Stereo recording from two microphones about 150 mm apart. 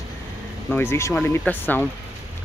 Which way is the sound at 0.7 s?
15° left (ahead or behind).